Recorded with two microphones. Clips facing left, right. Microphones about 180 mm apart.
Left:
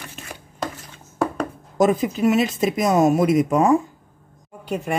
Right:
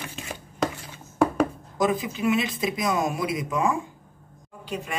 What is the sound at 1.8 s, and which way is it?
Speech, 45° left (ahead or behind).